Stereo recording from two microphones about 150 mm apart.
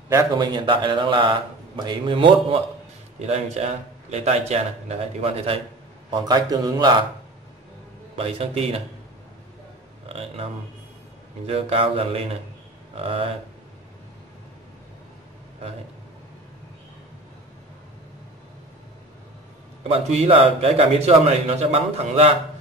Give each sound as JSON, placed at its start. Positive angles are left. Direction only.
{"t": 0.1, "sound": "a man's voice", "side_deg": -25}
{"t": 3.2, "sound": "a man's voice", "side_deg": -45}
{"t": 6.0, "sound": "a man's voice", "side_deg": -30}
{"t": 8.2, "sound": "a man's voice", "side_deg": -40}
{"t": 10.0, "sound": "a man's voice", "side_deg": -40}
{"t": 19.9, "sound": "a man's voice", "side_deg": -40}